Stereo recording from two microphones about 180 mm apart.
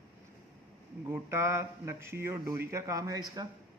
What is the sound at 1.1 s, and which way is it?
Speech, 15° right (ahead or behind).